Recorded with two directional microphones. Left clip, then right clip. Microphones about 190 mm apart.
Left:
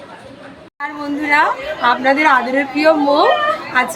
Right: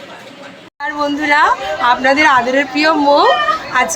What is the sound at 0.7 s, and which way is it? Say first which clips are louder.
Speech: right 5 dB; centre (ahead or behind).